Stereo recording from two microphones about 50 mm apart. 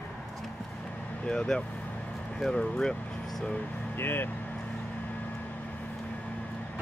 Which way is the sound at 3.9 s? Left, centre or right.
Left.